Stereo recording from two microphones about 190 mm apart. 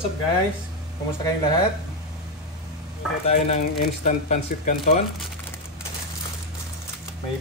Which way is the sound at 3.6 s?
45° left (ahead or behind).